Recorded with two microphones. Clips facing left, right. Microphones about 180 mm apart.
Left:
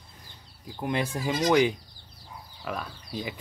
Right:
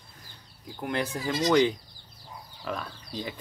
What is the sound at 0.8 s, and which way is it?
Speech, 15° left (ahead or behind).